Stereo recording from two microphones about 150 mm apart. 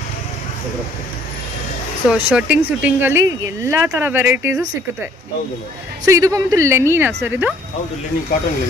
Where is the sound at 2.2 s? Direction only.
10° right (ahead or behind).